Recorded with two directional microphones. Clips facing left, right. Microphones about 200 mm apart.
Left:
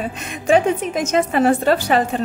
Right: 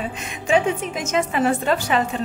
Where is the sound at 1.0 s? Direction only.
40° left (ahead or behind).